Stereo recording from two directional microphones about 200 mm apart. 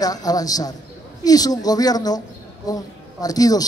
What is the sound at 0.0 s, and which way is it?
A man's voice, 20° left (ahead or behind).